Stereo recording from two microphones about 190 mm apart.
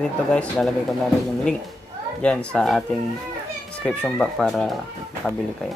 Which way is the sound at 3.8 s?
5° left (ahead or behind).